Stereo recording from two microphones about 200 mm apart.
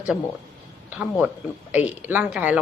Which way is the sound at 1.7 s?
5° right (ahead or behind).